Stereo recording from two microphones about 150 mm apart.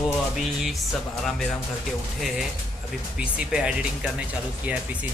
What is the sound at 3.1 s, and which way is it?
Speech, 5° right (ahead or behind).